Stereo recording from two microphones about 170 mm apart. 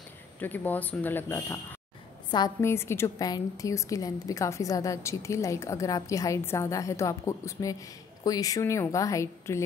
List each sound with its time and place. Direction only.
0.4 s a woman's voice: 10° left (ahead or behind)